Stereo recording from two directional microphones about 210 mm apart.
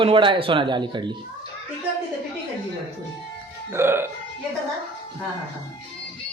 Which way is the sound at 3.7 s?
10° right (ahead or behind).